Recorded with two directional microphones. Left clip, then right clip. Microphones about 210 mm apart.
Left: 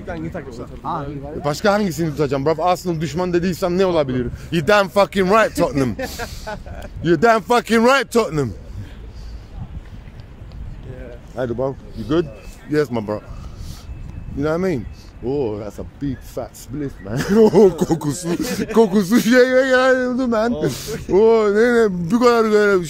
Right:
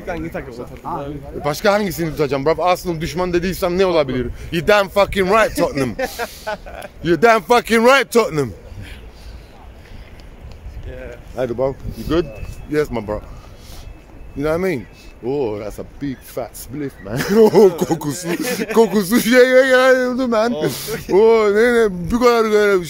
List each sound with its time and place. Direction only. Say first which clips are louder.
0.0 s speech: right 3 dB; 15° right (ahead or behind)
0.8 s a man's voice: left 1 dB; 40° left (ahead or behind)
1.4 s speech: right 1 dB; 10° left (ahead or behind)
5.9 s speech: right 4 dB; 10° right (ahead or behind)
6.8 s speech: right 1 dB; 10° left (ahead or behind)
11.3 s speech: right 3 dB; 10° left (ahead or behind)
14.4 s speech: right 1 dB; 5° left (ahead or behind)